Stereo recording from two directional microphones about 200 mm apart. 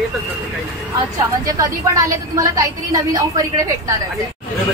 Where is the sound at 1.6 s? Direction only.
15° right (ahead or behind).